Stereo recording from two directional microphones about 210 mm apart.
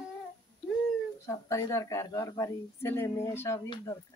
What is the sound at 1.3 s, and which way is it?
Speech, 15° left (ahead or behind).